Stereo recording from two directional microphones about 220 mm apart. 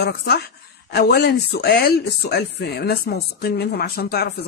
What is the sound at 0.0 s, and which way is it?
Speech, 45° left (ahead or behind).